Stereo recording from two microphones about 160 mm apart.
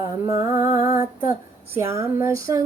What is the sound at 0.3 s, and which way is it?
Female singing, 20° right (ahead or behind).